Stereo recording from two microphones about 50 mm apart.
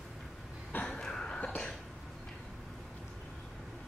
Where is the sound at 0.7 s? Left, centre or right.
Left.